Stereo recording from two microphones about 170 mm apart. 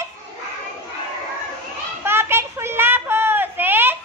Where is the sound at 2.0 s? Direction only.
15° right (ahead or behind).